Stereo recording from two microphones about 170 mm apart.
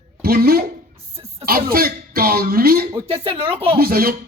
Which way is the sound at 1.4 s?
60° right (ahead or behind).